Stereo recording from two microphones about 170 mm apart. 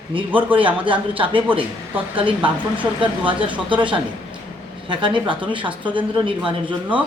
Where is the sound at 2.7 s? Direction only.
30° right (ahead or behind).